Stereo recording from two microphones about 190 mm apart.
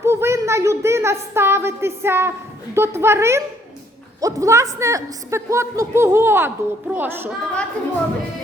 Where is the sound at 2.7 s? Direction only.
15° right (ahead or behind).